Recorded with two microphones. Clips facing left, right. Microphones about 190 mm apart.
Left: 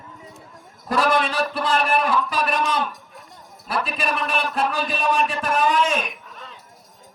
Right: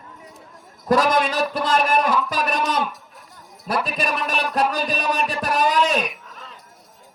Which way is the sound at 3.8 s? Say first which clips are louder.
Right 1 dB; 40° right (ahead or behind).